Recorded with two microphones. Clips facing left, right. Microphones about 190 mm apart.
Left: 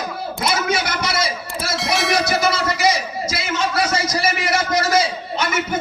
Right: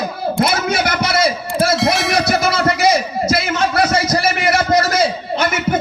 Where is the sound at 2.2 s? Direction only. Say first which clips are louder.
Right 3 dB; 55° right (ahead or behind).